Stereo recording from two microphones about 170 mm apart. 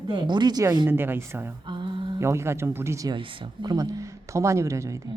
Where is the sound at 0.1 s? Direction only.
25° right (ahead or behind).